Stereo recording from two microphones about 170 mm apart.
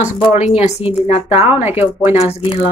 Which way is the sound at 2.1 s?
40° left (ahead or behind).